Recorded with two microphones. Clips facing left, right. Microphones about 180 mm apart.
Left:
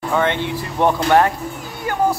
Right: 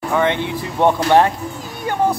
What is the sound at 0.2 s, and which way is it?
Speech, 15° right (ahead or behind).